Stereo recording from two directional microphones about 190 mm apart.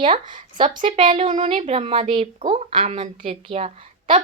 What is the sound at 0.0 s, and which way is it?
A woman's voice, 25° right (ahead or behind).